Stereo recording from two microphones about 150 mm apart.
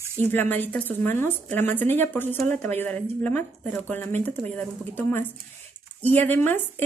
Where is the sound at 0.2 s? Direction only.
15° left (ahead or behind).